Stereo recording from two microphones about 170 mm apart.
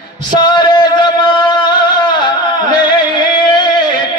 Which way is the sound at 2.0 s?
25° left (ahead or behind).